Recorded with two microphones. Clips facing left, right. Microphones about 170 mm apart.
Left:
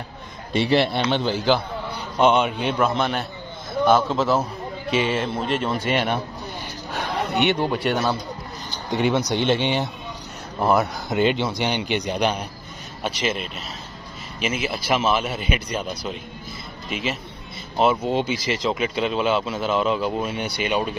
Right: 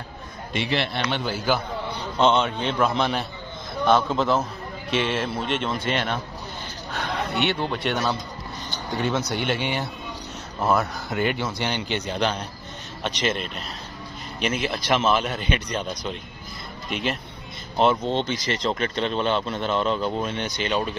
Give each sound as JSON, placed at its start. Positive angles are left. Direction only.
{"t": 0.5, "sound": "a man's voice", "side_deg": 35}
{"t": 1.2, "sound": "a man's voice", "side_deg": -10}
{"t": 2.1, "sound": "speech", "side_deg": 15}
{"t": 2.9, "sound": "speech", "side_deg": 0}
{"t": 5.9, "sound": "speech", "side_deg": 10}
{"t": 7.4, "sound": "speech", "side_deg": 10}